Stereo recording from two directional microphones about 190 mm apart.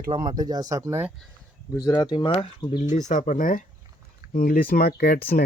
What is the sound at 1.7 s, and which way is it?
Speech, 15° left (ahead or behind).